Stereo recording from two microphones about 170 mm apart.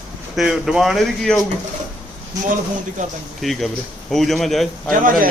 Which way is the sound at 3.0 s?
50° right (ahead or behind).